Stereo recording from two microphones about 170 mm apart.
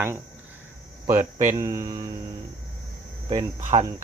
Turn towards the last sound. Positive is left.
turn(degrees=-40)  # may be behind; listen again after turning